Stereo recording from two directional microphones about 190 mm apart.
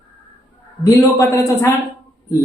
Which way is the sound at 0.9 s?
15° left (ahead or behind).